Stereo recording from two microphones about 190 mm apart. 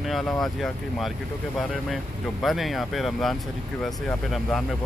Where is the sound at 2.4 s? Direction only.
Centre (ahead or behind).